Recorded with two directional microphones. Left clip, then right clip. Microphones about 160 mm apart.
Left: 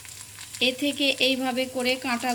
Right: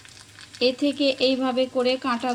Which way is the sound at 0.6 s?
40° right (ahead or behind).